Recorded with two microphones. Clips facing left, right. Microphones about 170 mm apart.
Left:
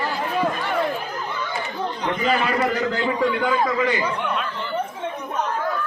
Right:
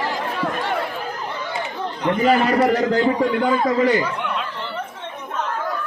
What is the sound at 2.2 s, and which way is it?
A man's voice, 40° right (ahead or behind).